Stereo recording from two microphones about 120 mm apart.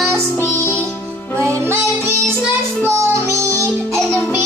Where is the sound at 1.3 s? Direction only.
25° right (ahead or behind).